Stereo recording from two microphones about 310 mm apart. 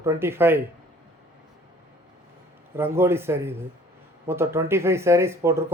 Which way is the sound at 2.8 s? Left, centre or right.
Centre.